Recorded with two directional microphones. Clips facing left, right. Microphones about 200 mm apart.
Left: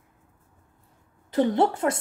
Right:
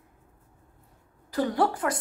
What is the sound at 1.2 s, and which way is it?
Speech, 25° left (ahead or behind).